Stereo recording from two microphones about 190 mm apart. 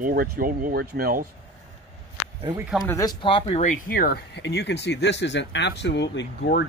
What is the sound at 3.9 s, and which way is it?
Speech, 50° left (ahead or behind).